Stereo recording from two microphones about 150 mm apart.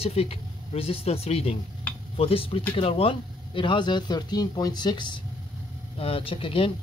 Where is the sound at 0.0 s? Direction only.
40° left (ahead or behind).